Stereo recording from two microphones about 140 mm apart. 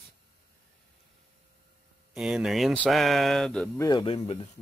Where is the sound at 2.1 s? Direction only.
5° right (ahead or behind).